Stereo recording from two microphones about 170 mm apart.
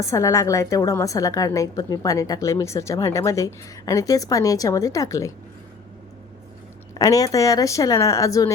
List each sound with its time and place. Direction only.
0.0 s a woman's voice: 15° left (ahead or behind)
7.0 s a woman's voice: 20° left (ahead or behind)